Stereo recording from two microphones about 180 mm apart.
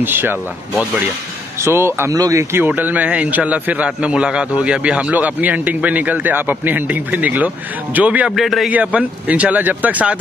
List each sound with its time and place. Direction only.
0.0 s a man's voice: 10° right (ahead or behind)